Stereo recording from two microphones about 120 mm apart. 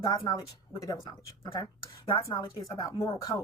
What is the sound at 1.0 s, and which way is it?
Speech, 45° left (ahead or behind).